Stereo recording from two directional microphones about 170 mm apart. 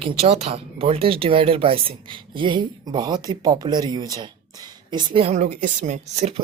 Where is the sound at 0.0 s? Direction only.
35° right (ahead or behind).